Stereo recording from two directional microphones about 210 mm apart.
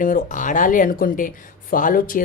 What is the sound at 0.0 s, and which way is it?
Speech, 40° left (ahead or behind).